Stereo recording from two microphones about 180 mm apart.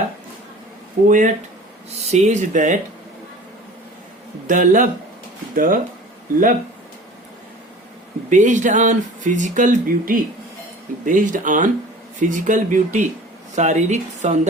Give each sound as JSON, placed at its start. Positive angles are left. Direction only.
{"t": 1.0, "sound": "speech", "side_deg": -45}
{"t": 4.4, "sound": "speech", "side_deg": -45}
{"t": 8.3, "sound": "speech", "side_deg": -45}